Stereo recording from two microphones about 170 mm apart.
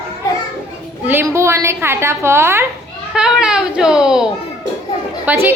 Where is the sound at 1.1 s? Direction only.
15° right (ahead or behind).